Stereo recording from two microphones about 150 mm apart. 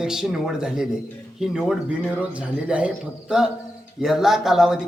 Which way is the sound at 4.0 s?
Centre (ahead or behind).